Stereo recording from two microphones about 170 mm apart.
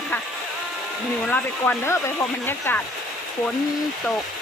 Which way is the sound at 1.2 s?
10° left (ahead or behind).